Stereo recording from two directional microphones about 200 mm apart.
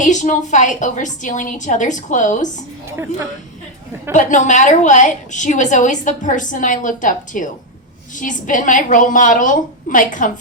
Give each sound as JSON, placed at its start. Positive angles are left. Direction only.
{"t": 0.0, "sound": "a woman's voice", "side_deg": 40}
{"t": 4.1, "sound": "a woman's voice", "side_deg": 40}